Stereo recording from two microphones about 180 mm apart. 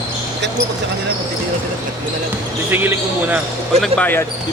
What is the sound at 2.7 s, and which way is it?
Speech, 10° right (ahead or behind).